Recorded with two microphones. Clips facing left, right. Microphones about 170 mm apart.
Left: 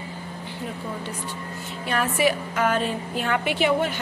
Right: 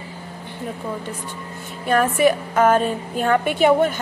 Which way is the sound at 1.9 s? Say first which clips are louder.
Right 6 dB; 50° right (ahead or behind).